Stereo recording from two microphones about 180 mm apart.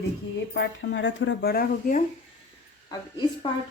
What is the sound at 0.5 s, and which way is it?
Speech, 90° left.